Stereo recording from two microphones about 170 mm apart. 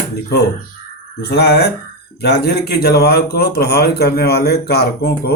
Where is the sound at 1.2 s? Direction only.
70° left (ahead or behind).